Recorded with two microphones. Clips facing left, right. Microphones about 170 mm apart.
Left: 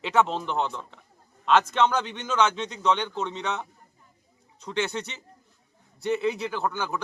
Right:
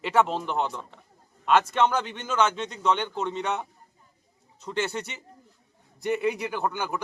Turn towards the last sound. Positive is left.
turn(degrees=-15)  # may be behind; listen again after turning